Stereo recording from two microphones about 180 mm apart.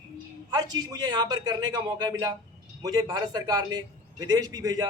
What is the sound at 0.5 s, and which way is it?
A man's voice, 20° right (ahead or behind).